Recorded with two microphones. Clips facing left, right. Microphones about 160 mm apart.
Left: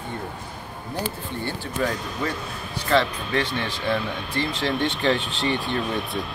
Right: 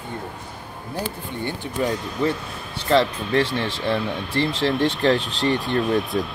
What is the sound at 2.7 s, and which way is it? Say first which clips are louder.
Speech: right 3 dB; 30° right (ahead or behind).